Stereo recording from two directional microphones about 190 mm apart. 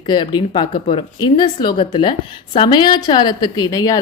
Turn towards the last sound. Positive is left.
turn(degrees=20)  # may be behind; listen again after turning